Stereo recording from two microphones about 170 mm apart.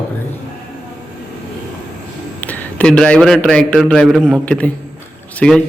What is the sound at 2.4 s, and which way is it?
A man's voice, 10° left (ahead or behind).